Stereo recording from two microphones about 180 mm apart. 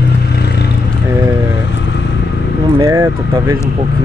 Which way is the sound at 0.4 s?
65° left (ahead or behind).